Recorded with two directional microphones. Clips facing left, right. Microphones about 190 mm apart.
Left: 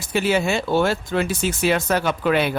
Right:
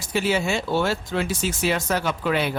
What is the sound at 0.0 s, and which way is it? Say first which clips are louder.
Speech: left 3 dB; 60° left (ahead or behind).